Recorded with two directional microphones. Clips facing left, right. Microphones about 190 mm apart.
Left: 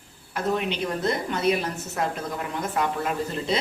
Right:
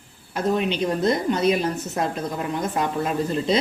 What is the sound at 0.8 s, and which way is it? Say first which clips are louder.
Speech: right 5 dB; 20° right (ahead or behind).